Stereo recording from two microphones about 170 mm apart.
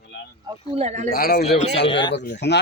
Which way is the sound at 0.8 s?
40° right (ahead or behind).